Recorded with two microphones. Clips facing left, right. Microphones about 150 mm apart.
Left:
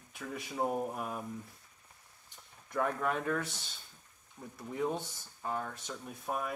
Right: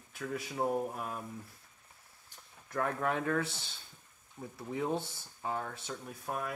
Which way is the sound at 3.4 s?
10° right (ahead or behind).